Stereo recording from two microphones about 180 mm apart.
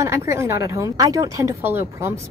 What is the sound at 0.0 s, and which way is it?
Speech, 15° right (ahead or behind).